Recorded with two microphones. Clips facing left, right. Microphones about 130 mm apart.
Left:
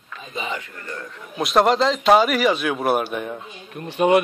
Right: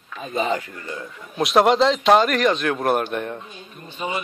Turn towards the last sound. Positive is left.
turn(degrees=70)  # may be behind; listen again after turning